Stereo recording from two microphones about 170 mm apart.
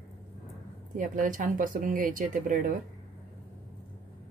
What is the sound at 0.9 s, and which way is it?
Speech, 50° right (ahead or behind).